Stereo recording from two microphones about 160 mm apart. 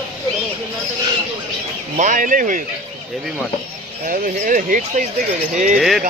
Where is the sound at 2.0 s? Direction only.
55° right (ahead or behind).